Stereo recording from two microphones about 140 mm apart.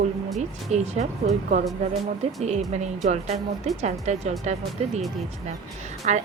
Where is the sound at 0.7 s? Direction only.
50° right (ahead or behind).